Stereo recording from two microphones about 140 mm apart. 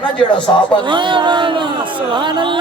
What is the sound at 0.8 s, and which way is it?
Speech, 35° right (ahead or behind).